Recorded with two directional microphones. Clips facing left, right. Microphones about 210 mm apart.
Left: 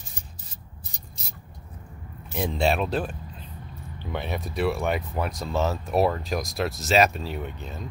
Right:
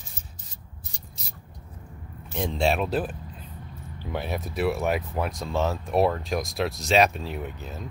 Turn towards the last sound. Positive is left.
turn(degrees=-5)  # may be behind; listen again after turning